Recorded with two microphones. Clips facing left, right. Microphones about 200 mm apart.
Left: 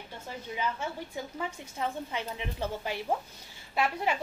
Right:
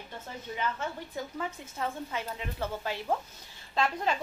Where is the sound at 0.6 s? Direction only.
10° left (ahead or behind).